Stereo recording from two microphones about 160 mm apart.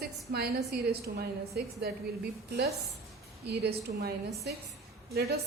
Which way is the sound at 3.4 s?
90° right.